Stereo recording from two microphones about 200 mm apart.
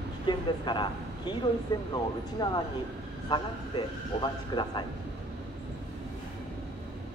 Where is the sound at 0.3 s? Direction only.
20° left (ahead or behind).